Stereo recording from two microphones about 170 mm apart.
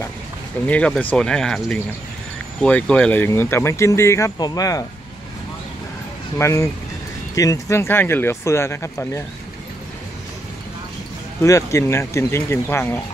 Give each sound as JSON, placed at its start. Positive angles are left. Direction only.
{"t": 0.7, "sound": "speech", "side_deg": 5}
{"t": 6.3, "sound": "speech", "side_deg": 15}
{"t": 11.4, "sound": "speech", "side_deg": 15}